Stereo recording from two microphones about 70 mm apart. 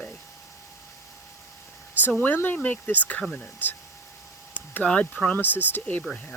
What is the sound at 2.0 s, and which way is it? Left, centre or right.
Speech, left.